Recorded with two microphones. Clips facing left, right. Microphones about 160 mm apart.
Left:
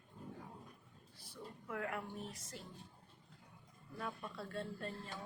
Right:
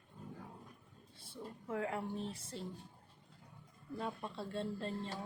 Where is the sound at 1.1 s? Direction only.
25° right (ahead or behind).